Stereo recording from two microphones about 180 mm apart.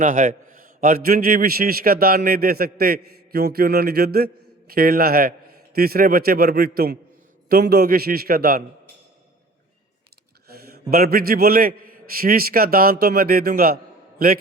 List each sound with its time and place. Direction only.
0.0 s a man's voice: 50° right (ahead or behind)
10.7 s a man's voice: 60° right (ahead or behind)